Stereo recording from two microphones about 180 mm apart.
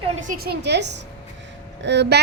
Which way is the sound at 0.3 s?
60° right (ahead or behind).